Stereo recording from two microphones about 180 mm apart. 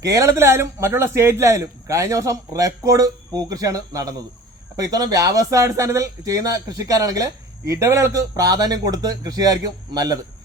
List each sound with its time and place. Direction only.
0.0 s a man's voice: 15° right (ahead or behind)